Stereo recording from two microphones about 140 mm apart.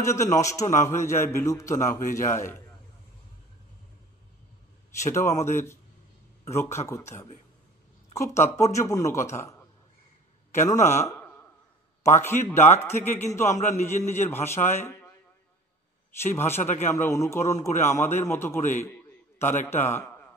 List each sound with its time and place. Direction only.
0.0 s a man's voice: 20° left (ahead or behind)
1.9 s speech: 70° left (ahead or behind)
2.2 s a man's voice: 20° left (ahead or behind)
5.0 s a man's voice: 20° left (ahead or behind)
10.7 s a man's voice: 20° left (ahead or behind)
13.5 s a man's voice: 55° left (ahead or behind)
13.8 s a man's voice: 15° left (ahead or behind)
16.3 s a man's voice: 15° left (ahead or behind)
18.8 s a sound: 15° left (ahead or behind)
19.6 s a man's voice: 15° left (ahead or behind)